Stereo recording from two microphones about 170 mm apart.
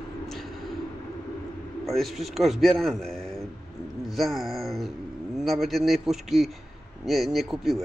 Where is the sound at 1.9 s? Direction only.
Centre (ahead or behind).